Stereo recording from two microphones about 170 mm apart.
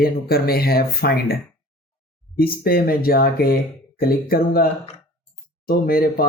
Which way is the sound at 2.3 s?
60° left (ahead or behind).